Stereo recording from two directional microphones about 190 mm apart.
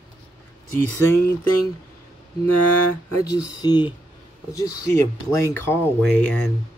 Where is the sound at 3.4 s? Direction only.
20° left (ahead or behind); by 6.5 s 5° left (ahead or behind).